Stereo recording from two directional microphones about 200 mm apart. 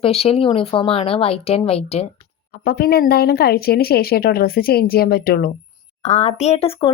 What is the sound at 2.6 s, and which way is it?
Speech, 50° left (ahead or behind).